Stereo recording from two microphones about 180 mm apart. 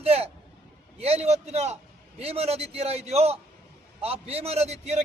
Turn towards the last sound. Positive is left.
turn(degrees=-35)  # may be behind; listen again after turning